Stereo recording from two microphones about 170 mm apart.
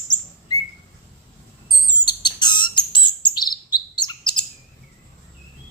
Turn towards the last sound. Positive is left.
turn(degrees=25)  # may be behind; listen again after turning